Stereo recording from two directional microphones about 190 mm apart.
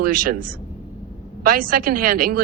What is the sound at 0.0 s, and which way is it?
A man's voice, 50° right (ahead or behind).